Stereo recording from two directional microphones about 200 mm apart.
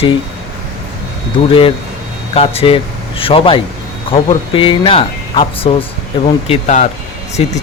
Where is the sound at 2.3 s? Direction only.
30° left (ahead or behind).